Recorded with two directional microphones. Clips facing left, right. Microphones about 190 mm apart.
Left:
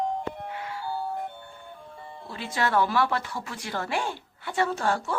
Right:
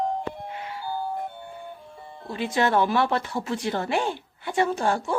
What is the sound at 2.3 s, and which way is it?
Speech, 20° right (ahead or behind).